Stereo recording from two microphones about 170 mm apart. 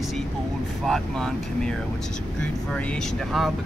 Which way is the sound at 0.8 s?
5° left (ahead or behind).